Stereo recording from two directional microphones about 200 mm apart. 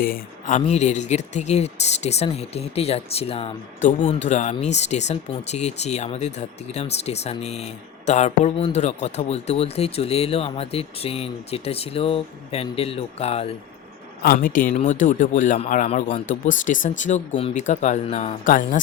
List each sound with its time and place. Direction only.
0.0 s speech: 40° left (ahead or behind)
14.2 s speech: 45° left (ahead or behind)